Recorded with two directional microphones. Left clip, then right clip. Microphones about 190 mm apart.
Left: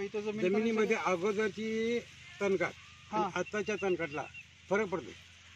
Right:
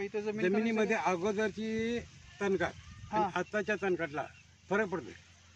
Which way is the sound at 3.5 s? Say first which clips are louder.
Right 2 dB; 30° right (ahead or behind).